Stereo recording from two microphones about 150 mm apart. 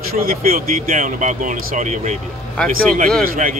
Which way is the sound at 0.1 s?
75° right (ahead or behind).